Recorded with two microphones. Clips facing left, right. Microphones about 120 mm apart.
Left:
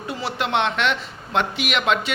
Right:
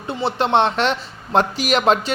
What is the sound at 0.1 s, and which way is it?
Speech, 30° right (ahead or behind).